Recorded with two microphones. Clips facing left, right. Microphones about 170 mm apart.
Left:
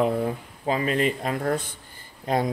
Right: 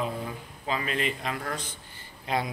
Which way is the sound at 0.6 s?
40° left (ahead or behind).